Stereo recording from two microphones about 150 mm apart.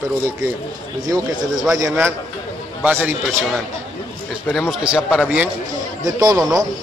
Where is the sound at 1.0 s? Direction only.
25° right (ahead or behind).